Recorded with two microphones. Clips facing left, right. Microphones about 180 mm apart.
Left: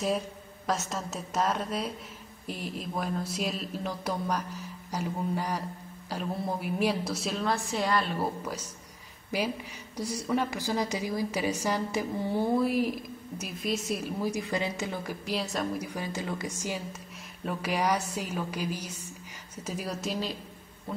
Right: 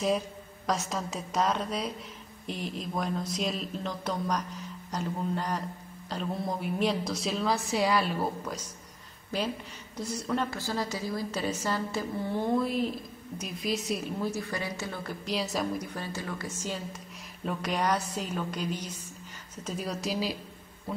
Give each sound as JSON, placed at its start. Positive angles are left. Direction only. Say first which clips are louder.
{"t": 0.7, "sound": "a woman's voice", "louder": "right 1 dB", "side_deg": 0}
{"t": 9.9, "sound": "a woman's voice", "louder": "left 2 dB", "side_deg": 10}
{"t": 14.3, "sound": "a woman's voice", "louder": "left 3 dB", "side_deg": 20}
{"t": 15.2, "sound": "a woman's voice", "louder": "right 1 dB", "side_deg": 0}